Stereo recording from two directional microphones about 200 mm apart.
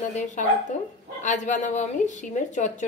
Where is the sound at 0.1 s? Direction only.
35° left (ahead or behind).